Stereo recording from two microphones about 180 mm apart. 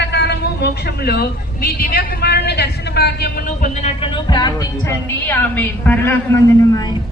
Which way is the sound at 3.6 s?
40° left (ahead or behind).